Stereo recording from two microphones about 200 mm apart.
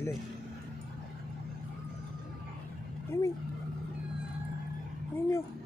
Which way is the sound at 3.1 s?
15° left (ahead or behind).